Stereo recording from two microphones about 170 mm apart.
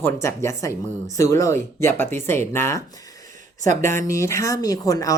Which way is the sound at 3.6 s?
45° right (ahead or behind).